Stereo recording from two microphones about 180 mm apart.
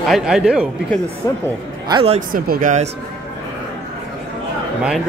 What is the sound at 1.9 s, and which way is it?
Speech, 35° right (ahead or behind).